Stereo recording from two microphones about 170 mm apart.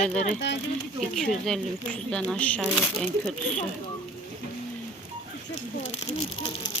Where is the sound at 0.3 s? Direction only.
90° left.